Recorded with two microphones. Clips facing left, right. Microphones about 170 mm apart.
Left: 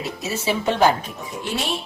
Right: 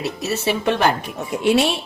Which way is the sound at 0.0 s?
65° right (ahead or behind).